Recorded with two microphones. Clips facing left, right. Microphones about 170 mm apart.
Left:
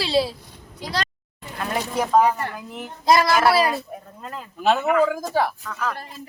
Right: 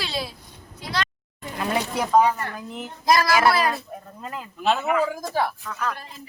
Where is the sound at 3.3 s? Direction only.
Centre (ahead or behind).